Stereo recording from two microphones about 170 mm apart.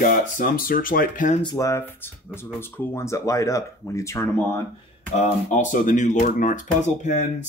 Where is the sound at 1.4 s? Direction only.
20° left (ahead or behind).